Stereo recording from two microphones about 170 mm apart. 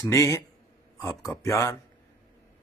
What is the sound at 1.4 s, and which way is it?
Speech, 20° left (ahead or behind).